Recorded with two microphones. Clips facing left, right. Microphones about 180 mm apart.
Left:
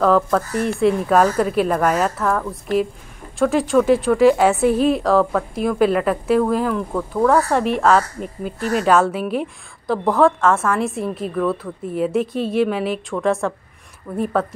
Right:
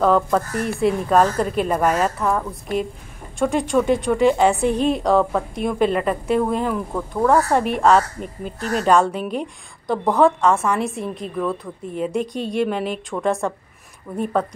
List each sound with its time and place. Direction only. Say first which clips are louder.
0.0 s a woman's voice: left 1 dB; centre (ahead or behind)